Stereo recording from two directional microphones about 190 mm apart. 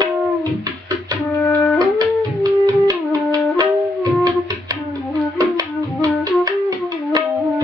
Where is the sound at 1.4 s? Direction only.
10° left (ahead or behind).